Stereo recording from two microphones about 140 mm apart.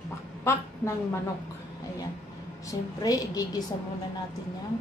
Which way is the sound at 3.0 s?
25° left (ahead or behind).